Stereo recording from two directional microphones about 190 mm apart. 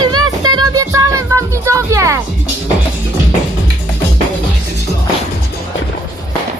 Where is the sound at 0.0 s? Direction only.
20° right (ahead or behind).